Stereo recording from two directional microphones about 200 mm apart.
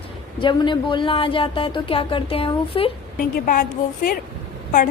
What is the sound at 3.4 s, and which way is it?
Speech, 40° left (ahead or behind).